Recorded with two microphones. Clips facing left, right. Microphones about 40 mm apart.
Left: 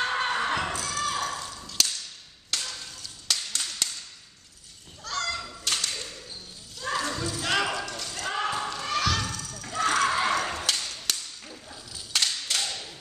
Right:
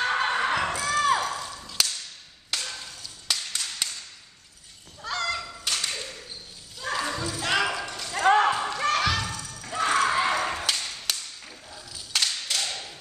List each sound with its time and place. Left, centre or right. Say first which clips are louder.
0.1 s a sound: right 2 dB; centre
5.0 s fowl: right 2 dB; right
5.4 s tap: even; centre
6.8 s a sound: even; centre
8.1 s basketball bounce: right 12 dB; right
8.5 s basketball bounce: right 4 dB; centre
8.7 s music: right 5 dB; right
9.0 s a sound: right 1 dB; centre
12.6 s tap: right 1 dB; centre